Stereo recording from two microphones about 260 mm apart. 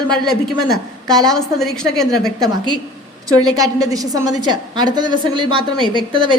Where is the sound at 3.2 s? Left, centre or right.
Centre.